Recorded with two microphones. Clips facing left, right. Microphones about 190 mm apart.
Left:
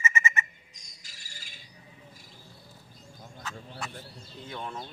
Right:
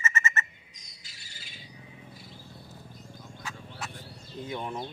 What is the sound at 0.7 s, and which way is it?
Bird, 45° left (ahead or behind).